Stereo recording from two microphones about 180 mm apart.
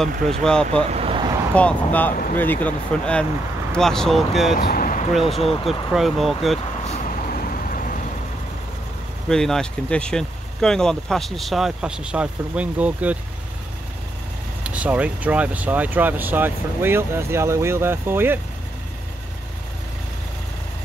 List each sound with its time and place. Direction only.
0.3 s speech: 5° left (ahead or behind)
0.8 s vehicle: 35° right (ahead or behind)
1.5 s speech: 5° left (ahead or behind)
4.6 s vehicle: 55° left (ahead or behind)
5.2 s speech: 30° left (ahead or behind)
5.9 s speech: centre (ahead or behind)
6.9 s vehicle: 50° left (ahead or behind)
9.3 s speech: 5° left (ahead or behind)
14.6 s speech: 5° right (ahead or behind)